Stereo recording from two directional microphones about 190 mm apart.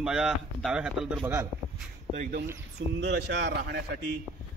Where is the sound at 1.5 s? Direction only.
5° right (ahead or behind).